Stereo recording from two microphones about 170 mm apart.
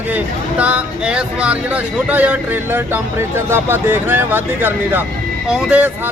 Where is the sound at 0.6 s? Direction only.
10° right (ahead or behind).